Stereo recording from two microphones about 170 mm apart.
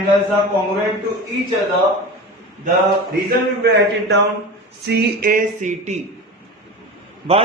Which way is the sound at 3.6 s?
80° right.